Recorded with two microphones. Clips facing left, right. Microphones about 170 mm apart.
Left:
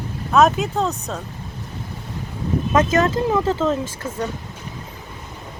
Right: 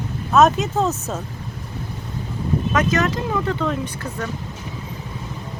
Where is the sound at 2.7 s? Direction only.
25° left (ahead or behind).